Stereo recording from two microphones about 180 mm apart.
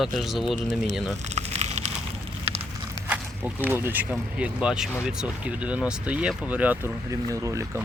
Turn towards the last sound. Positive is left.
turn(degrees=-15)  # may be behind; listen again after turning